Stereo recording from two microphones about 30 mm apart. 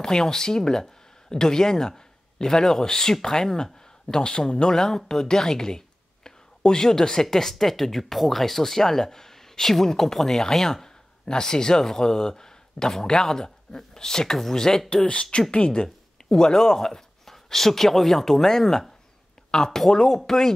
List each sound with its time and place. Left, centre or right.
0.0 s speech: centre
4.2 s speech: left
4.7 s speech: centre
15.5 s speech: left
16.3 s speech: centre